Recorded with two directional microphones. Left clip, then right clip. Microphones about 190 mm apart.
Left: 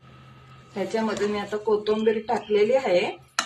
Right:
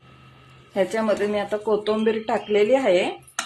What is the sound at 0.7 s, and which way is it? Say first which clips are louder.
Speech: right 5 dB; 45° right (ahead or behind).